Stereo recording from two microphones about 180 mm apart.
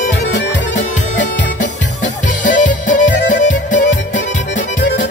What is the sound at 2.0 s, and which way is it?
Music, 45° left (ahead or behind).